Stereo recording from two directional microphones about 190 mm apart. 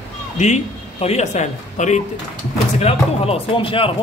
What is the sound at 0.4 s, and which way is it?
A man's voice, 35° left (ahead or behind).